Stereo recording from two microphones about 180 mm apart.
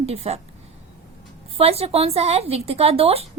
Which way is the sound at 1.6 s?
35° right (ahead or behind).